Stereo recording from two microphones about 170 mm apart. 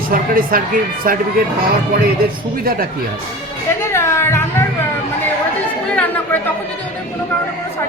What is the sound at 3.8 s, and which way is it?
Music, 15° left (ahead or behind).